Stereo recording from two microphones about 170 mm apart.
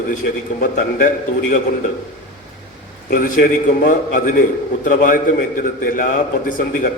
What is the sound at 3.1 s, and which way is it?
A man's voice, 55° left (ahead or behind).